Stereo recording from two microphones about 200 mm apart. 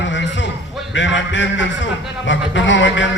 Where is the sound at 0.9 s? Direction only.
65° left (ahead or behind).